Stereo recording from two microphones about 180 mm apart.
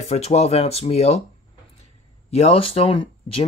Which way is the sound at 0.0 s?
35° left (ahead or behind).